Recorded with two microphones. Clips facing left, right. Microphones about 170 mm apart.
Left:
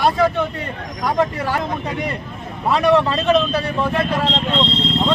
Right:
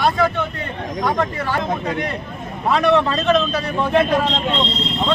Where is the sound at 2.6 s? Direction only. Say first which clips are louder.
Left 1 dB; 5° left (ahead or behind).